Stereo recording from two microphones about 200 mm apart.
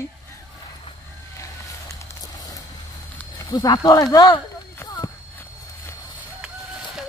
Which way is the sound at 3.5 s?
20° left (ahead or behind).